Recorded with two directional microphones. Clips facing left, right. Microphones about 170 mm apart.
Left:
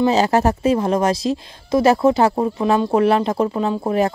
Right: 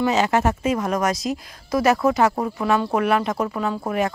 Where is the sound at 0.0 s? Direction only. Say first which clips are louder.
Left 4 dB; 35° left (ahead or behind).